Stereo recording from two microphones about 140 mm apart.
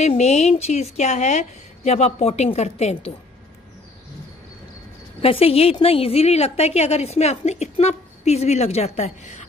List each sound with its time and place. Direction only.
0.0 s a woman's voice: 50° left (ahead or behind)
5.2 s a woman's voice: 40° left (ahead or behind)